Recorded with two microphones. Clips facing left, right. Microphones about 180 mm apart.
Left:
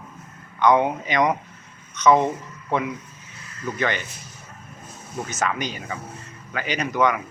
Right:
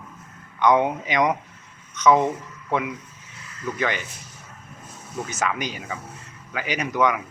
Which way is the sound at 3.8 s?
5° right (ahead or behind).